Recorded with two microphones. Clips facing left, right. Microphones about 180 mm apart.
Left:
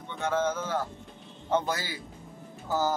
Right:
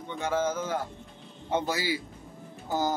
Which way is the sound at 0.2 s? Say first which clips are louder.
Even; 10° right (ahead or behind).